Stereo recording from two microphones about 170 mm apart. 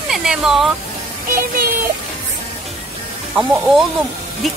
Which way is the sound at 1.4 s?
60° right (ahead or behind).